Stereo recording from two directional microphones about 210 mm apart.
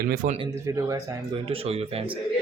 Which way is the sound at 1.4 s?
25° right (ahead or behind).